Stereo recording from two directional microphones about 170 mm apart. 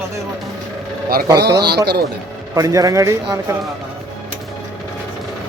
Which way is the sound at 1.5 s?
75° right (ahead or behind).